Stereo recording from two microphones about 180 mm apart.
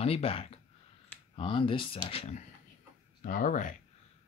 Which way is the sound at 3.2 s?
50° left (ahead or behind).